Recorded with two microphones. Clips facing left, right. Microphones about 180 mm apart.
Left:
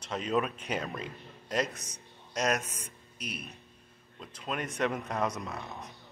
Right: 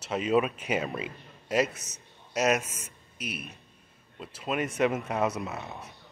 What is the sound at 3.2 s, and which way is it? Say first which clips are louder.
A man's voice: right 3 dB; 5° right (ahead or behind).